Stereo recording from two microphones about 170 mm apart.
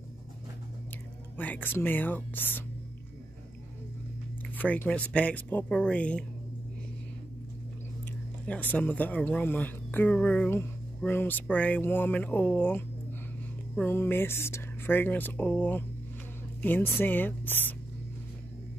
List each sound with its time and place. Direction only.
1.3 s speech: 10° left (ahead or behind)
4.6 s speech: 10° left (ahead or behind)
8.5 s speech: 10° left (ahead or behind)